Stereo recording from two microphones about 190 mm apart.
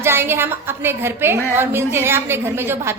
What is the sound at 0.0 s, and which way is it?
A woman's voice, 10° right (ahead or behind).